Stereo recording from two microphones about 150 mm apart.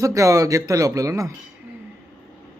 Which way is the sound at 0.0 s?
20° right (ahead or behind).